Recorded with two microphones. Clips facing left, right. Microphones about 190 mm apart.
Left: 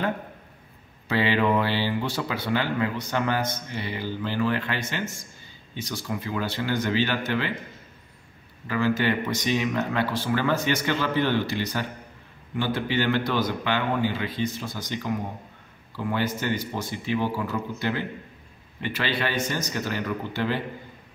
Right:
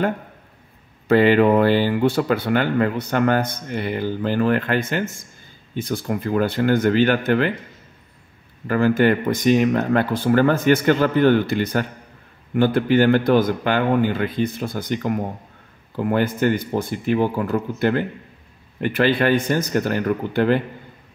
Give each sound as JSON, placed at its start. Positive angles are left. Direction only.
{"t": 1.0, "sound": "speech", "side_deg": -50}
{"t": 8.6, "sound": "speech", "side_deg": -50}